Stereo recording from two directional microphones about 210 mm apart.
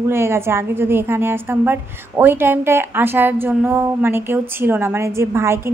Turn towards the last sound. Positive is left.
turn(degrees=-10)  # may be behind; listen again after turning